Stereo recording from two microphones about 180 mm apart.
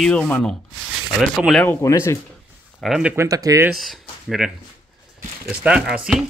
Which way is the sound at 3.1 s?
15° right (ahead or behind).